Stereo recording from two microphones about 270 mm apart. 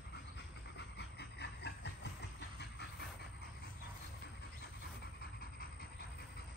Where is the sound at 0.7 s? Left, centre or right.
Left.